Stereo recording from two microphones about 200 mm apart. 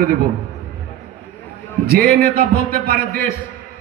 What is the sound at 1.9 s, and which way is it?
A man's voice, 45° right (ahead or behind).